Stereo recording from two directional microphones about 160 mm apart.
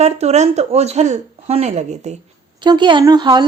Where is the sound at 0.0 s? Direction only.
45° right (ahead or behind).